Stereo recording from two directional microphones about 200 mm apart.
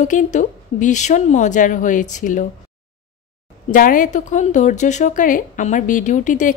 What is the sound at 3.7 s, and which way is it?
A woman's voice, 40° left (ahead or behind).